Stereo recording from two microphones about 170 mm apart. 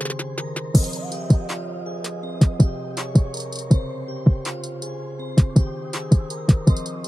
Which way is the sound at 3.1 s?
25° right (ahead or behind).